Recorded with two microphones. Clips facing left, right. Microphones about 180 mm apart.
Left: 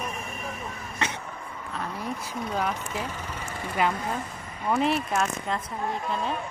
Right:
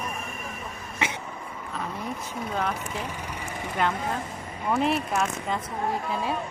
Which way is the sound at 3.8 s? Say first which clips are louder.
Even; 5° left (ahead or behind).